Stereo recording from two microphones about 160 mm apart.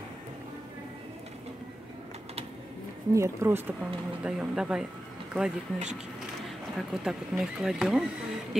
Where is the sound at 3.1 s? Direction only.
15° right (ahead or behind).